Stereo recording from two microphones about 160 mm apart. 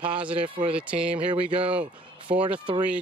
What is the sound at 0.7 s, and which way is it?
Speech, 5° right (ahead or behind).